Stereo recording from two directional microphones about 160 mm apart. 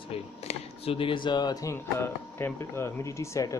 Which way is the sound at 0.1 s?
40° left (ahead or behind).